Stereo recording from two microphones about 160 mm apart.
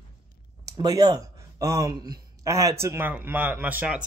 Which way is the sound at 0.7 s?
25° right (ahead or behind).